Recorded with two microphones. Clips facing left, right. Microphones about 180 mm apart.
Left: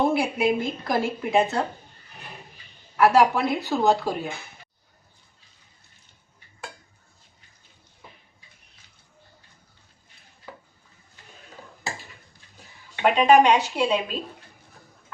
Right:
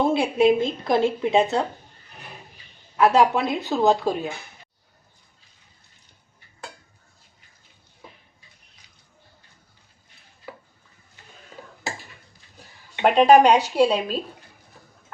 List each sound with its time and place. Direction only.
0.1 s speech: 25° right (ahead or behind)
3.0 s speech: 20° right (ahead or behind)
13.1 s a woman's voice: 35° right (ahead or behind)